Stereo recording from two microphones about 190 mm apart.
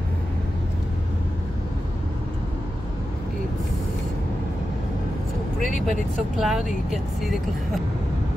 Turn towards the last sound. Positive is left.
turn(degrees=0)  # may be behind; listen again after turning